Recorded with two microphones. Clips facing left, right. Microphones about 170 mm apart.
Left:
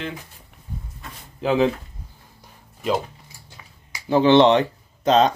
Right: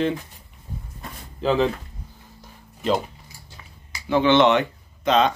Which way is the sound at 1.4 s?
10° left (ahead or behind).